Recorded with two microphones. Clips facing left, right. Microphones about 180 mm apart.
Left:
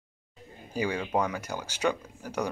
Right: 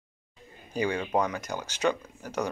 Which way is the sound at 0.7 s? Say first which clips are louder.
Right 1 dB; 10° left (ahead or behind).